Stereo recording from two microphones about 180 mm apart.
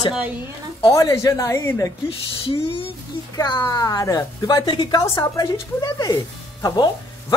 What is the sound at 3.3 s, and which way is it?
A woman's voice, 20° left (ahead or behind).